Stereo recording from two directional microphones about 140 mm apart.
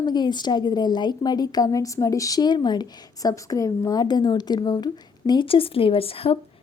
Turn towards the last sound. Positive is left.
turn(degrees=40)  # may be behind; listen again after turning